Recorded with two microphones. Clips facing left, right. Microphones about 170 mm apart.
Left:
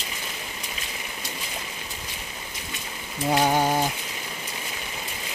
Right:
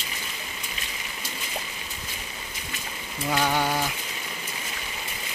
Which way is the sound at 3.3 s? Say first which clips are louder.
Left 3 dB; 35° left (ahead or behind).